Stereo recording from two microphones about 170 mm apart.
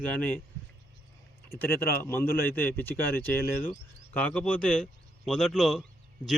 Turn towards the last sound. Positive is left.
turn(degrees=0)  # may be behind; listen again after turning